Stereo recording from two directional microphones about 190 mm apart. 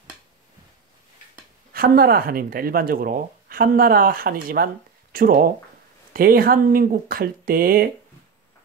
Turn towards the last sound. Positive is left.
turn(degrees=-50)  # may be behind; listen again after turning